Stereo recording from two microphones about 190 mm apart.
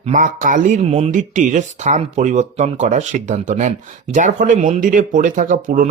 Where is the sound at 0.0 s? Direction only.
40° right (ahead or behind).